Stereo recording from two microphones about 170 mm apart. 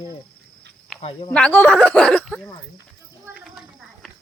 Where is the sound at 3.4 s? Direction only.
Centre (ahead or behind).